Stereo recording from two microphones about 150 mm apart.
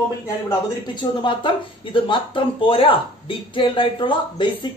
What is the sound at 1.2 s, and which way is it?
Speech, 35° left (ahead or behind).